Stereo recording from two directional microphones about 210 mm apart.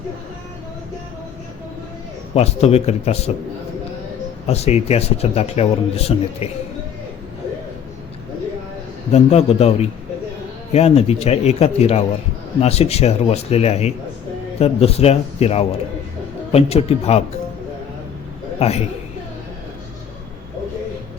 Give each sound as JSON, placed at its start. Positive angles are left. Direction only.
{"t": 2.3, "sound": "a man's voice", "side_deg": 30}
{"t": 4.4, "sound": "a man's voice", "side_deg": 30}
{"t": 9.1, "sound": "a man's voice", "side_deg": 30}
{"t": 18.6, "sound": "a man's voice", "side_deg": 30}